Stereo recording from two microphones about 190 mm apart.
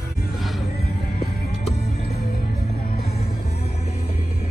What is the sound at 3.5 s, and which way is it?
Music, 35° left (ahead or behind).